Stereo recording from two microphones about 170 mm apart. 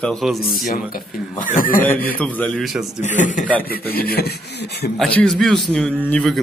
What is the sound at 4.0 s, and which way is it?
Speech, 65° left (ahead or behind).